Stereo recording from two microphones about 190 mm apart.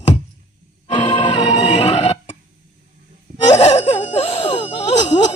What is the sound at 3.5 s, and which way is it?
Wail, 35° left (ahead or behind).